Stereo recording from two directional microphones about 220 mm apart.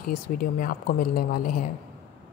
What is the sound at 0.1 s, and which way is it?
Speech, 40° left (ahead or behind).